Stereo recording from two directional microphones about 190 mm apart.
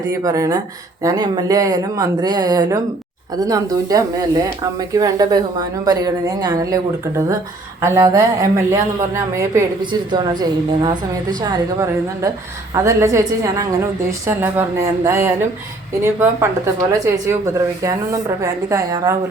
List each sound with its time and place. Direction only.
0.1 s a woman's voice: 15° right (ahead or behind)
7.8 s a woman's voice: 15° right (ahead or behind)